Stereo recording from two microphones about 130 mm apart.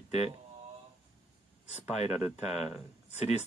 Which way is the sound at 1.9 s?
55° left (ahead or behind).